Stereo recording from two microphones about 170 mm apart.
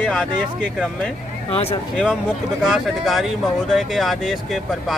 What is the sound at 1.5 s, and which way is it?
Speech, 35° left (ahead or behind).